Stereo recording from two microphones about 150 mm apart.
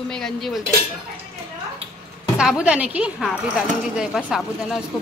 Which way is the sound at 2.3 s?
5° right (ahead or behind).